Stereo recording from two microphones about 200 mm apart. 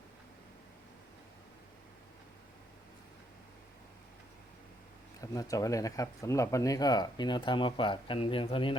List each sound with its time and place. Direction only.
5.2 s speech: 15° left (ahead or behind)